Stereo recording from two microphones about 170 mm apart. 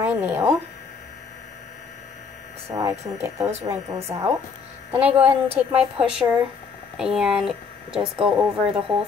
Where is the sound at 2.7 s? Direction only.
20° right (ahead or behind).